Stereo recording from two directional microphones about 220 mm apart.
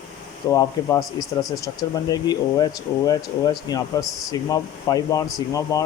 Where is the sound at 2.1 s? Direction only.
20° left (ahead or behind).